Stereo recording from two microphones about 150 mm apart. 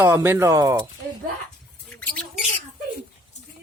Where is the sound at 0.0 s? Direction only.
15° right (ahead or behind).